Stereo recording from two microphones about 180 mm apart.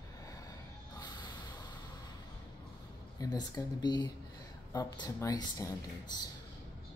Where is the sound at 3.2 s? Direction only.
20° left (ahead or behind).